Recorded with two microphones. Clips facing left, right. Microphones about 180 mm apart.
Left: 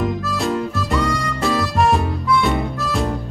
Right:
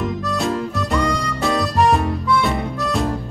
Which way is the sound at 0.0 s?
Centre (ahead or behind).